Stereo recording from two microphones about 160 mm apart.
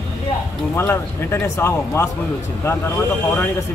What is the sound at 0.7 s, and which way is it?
A man's voice, 15° left (ahead or behind).